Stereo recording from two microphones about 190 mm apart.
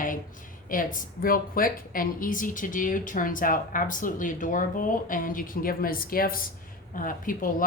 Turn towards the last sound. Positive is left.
turn(degrees=45)  # may be behind; listen again after turning